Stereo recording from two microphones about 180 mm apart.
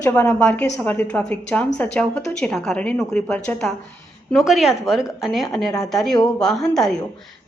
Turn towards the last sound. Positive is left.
turn(degrees=5)  # may be behind; listen again after turning